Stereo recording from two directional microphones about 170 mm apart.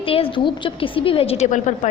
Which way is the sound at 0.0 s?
30° left (ahead or behind).